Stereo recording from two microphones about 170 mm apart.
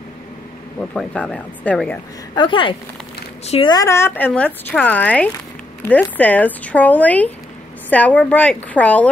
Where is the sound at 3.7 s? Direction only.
20° left (ahead or behind).